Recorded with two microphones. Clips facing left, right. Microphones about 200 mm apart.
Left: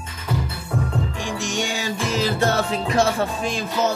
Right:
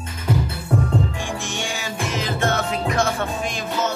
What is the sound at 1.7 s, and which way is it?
Music, 35° left (ahead or behind).